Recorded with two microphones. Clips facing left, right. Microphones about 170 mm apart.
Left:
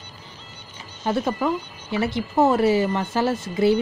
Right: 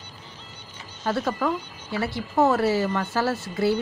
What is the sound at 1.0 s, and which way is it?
Speech, 15° left (ahead or behind).